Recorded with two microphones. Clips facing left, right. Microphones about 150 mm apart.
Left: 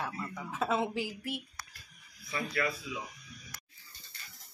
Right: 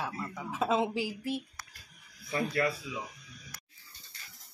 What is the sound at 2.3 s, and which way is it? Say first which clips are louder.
Speech: right 4 dB; 40° right (ahead or behind).